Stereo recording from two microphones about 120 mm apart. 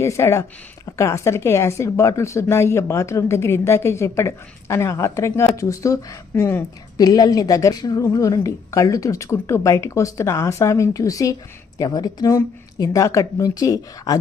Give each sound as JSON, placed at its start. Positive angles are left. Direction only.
{"t": 0.0, "sound": "speech", "side_deg": 25}
{"t": 6.9, "sound": "speech", "side_deg": 30}